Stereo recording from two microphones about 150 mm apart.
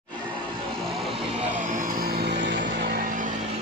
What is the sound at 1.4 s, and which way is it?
Music, 60° right (ahead or behind).